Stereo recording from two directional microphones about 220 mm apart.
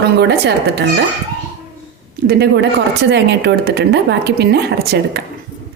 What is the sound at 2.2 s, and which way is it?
A woman's voice, 45° right (ahead or behind).